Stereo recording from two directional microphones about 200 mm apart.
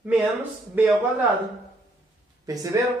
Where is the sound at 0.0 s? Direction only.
10° right (ahead or behind).